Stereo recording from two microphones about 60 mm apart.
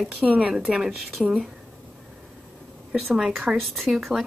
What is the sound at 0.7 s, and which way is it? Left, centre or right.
Speech, centre.